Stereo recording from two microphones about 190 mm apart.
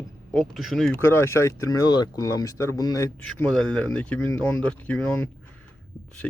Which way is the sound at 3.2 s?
5° left (ahead or behind).